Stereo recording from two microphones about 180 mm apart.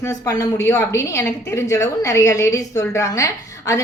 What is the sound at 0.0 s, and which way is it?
A woman's voice, 20° left (ahead or behind).